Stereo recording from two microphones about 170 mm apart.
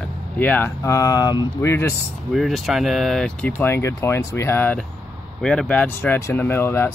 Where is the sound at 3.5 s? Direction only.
15° left (ahead or behind).